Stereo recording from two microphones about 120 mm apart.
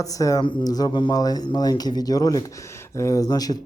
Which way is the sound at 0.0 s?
30° left (ahead or behind).